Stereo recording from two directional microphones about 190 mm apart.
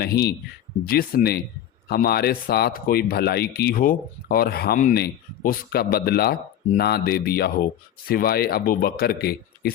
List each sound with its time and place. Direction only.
0.0 s speech: 55° left (ahead or behind)